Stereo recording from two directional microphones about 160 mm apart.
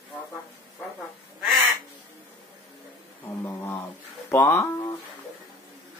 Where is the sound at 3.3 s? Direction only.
15° left (ahead or behind).